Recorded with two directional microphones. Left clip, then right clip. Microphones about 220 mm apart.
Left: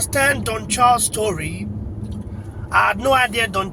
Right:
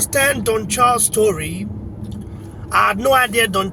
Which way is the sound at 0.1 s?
15° right (ahead or behind).